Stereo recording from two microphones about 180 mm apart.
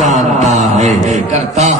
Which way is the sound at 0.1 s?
40° right (ahead or behind).